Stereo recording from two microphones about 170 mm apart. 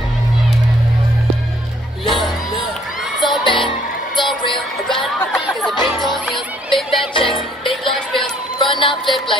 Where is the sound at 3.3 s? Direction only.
30° left (ahead or behind).